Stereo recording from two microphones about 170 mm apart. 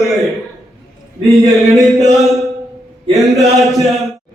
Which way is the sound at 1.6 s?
Centre (ahead or behind).